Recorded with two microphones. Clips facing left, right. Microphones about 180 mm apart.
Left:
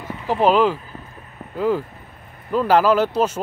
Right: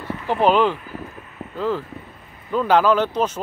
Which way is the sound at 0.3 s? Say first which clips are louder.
Left 1 dB; centre (ahead or behind).